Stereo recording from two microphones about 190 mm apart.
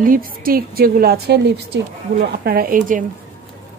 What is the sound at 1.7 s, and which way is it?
Speech, 70° right (ahead or behind).